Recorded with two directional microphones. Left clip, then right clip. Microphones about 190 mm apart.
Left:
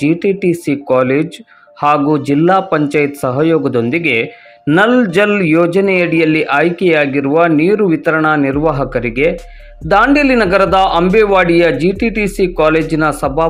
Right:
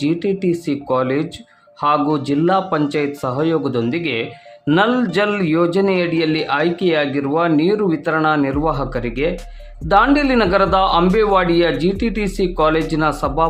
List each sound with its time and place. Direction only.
0.0 s a man's voice: 20° left (ahead or behind)